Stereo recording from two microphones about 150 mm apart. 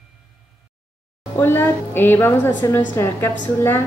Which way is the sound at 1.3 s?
15° left (ahead or behind).